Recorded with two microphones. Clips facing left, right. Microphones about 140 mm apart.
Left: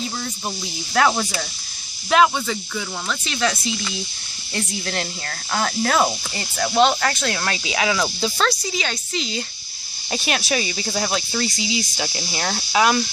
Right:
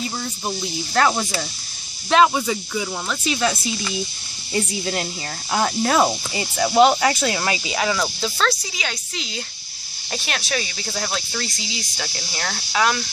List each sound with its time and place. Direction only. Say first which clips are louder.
0.9 s a woman's voice: left 1 dB; centre (ahead or behind)
2.3 s cricket: right 3 dB; 10° right (ahead or behind); by 8.5 s 5° left (ahead or behind)
8.5 s a woman's voice: left 1 dB; 5° right (ahead or behind)
10.1 s speech: left 3 dB; 10° left (ahead or behind)